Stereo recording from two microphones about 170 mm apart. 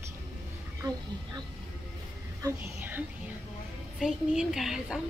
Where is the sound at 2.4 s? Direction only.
10° right (ahead or behind).